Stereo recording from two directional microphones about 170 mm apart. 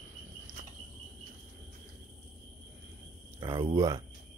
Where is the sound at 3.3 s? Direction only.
20° right (ahead or behind).